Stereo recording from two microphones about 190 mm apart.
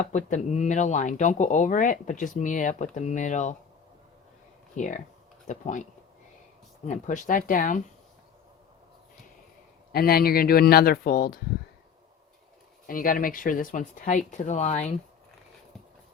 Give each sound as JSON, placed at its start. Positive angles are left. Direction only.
{"t": 0.0, "sound": "speech", "side_deg": 40}
{"t": 4.8, "sound": "speech", "side_deg": 40}
{"t": 9.9, "sound": "speech", "side_deg": 55}
{"t": 12.9, "sound": "speech", "side_deg": 45}